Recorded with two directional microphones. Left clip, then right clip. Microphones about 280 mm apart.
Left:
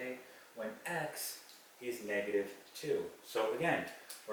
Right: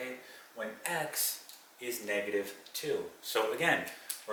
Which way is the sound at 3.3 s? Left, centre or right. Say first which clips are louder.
Right 4 dB; centre.